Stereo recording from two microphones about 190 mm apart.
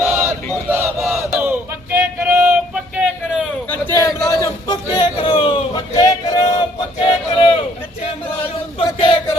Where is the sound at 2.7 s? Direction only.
5° right (ahead or behind).